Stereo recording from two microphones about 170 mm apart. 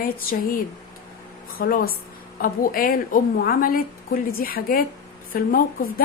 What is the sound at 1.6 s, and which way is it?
A woman's voice, 60° left (ahead or behind).